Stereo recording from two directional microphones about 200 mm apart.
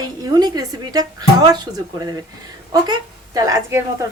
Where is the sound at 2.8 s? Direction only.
20° right (ahead or behind).